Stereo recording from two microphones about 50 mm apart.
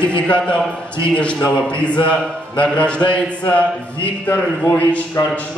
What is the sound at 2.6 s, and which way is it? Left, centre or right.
Speech, left.